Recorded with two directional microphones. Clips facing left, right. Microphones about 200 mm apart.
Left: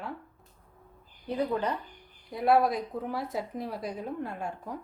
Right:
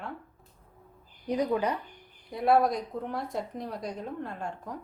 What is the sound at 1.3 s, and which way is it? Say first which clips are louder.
Speech: right 2 dB; 15° right (ahead or behind).